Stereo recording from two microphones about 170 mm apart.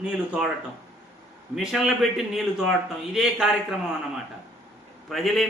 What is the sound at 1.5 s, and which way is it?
A man's voice, centre (ahead or behind).